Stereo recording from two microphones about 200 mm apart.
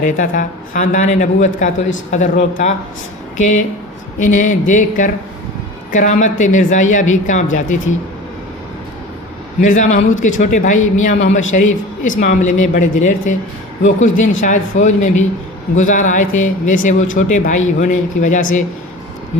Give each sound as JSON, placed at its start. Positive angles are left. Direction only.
{"t": 0.0, "sound": "speech", "side_deg": 40}
{"t": 9.6, "sound": "speech", "side_deg": 40}